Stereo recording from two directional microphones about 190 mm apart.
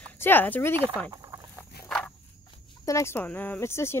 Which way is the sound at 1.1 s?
15° right (ahead or behind).